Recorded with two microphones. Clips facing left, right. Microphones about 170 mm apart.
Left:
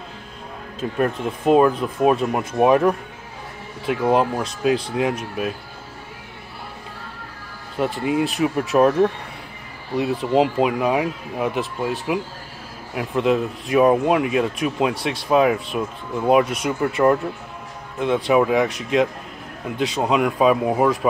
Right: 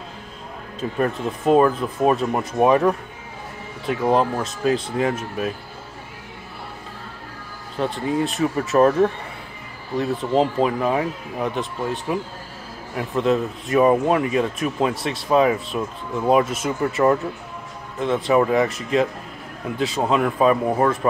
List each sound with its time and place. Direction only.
0.7 s speech: 5° left (ahead or behind)
7.8 s speech: 10° left (ahead or behind)